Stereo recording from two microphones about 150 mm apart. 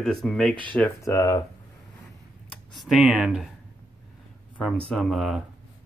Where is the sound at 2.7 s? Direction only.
Centre (ahead or behind).